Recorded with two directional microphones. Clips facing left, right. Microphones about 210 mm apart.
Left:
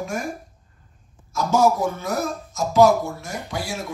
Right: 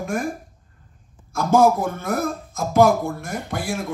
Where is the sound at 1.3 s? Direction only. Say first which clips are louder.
Right 2 dB; 55° right (ahead or behind).